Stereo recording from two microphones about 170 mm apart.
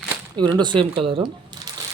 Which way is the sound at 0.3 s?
25° right (ahead or behind).